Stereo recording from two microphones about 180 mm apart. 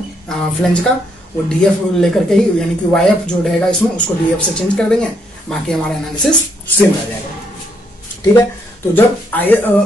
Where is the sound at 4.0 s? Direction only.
5° left (ahead or behind).